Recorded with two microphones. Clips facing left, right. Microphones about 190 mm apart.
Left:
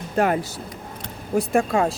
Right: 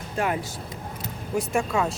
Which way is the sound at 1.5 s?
55° left (ahead or behind).